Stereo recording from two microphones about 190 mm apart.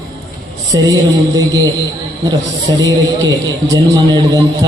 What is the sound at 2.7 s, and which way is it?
A man's voice, 20° right (ahead or behind).